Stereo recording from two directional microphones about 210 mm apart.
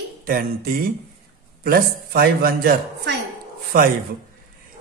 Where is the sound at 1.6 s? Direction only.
45° right (ahead or behind).